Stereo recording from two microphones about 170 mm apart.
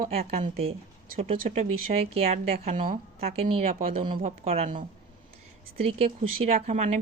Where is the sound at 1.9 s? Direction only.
35° right (ahead or behind).